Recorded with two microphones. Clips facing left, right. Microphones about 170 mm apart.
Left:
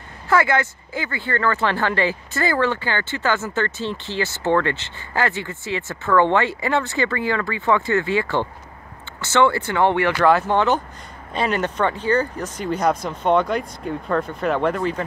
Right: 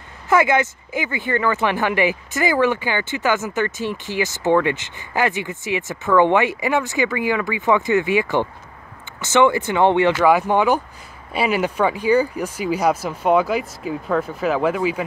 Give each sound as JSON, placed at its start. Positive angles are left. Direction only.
{"t": 0.3, "sound": "speech", "side_deg": -20}